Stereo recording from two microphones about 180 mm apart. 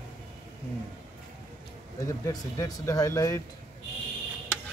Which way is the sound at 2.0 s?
20° left (ahead or behind).